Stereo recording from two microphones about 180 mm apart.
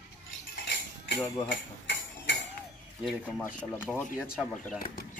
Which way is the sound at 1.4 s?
80° left.